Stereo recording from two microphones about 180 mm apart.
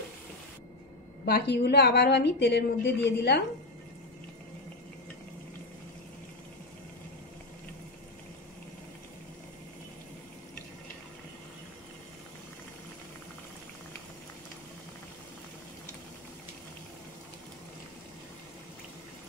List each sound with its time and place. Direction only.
1.2 s a woman's voice: 60° left (ahead or behind)